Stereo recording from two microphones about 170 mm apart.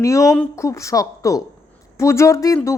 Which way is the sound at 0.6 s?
20° left (ahead or behind).